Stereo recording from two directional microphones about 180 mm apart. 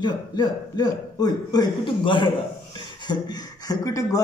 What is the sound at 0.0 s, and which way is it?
A man's voice, 20° left (ahead or behind).